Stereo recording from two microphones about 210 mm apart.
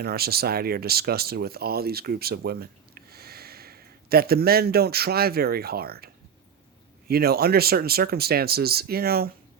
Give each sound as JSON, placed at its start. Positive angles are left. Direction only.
{"t": 0.0, "sound": "speech", "side_deg": -45}
{"t": 7.1, "sound": "speech", "side_deg": -50}